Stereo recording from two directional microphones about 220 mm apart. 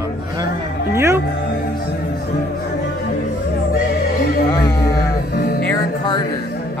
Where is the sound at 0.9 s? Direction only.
10° right (ahead or behind).